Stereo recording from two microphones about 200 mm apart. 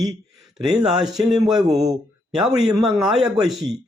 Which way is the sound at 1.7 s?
35° right (ahead or behind).